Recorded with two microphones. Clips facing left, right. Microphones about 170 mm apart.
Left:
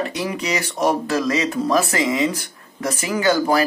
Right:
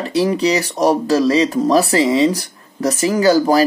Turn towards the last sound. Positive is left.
turn(degrees=-35)  # may be behind; listen again after turning